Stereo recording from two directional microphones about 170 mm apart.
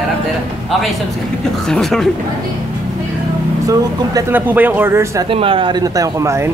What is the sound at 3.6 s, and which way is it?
Speech, 15° right (ahead or behind).